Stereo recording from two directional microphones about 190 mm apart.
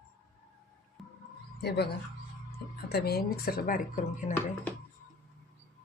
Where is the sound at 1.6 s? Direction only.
55° left (ahead or behind).